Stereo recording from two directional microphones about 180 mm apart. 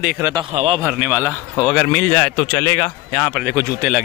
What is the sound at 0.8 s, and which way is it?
Speech, 10° right (ahead or behind).